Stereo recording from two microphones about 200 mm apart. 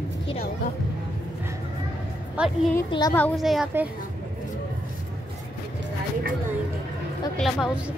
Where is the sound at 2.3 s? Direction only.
Centre (ahead or behind).